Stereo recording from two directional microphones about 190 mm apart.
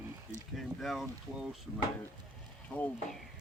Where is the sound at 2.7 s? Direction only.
5° left (ahead or behind).